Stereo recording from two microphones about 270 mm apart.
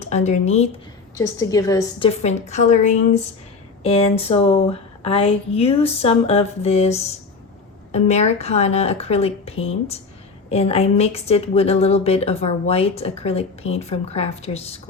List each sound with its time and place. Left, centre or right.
0.0 s a woman's voice: left
1.1 s a woman's voice: centre